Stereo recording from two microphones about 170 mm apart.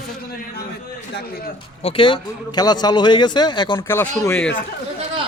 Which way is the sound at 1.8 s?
35° left (ahead or behind).